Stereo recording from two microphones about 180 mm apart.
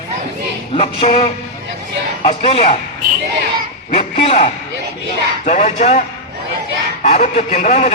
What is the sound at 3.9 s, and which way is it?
A man's voice, 35° left (ahead or behind).